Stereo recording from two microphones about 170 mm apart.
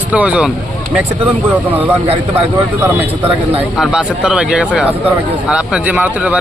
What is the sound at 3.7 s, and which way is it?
A man's voice, 5° right (ahead or behind).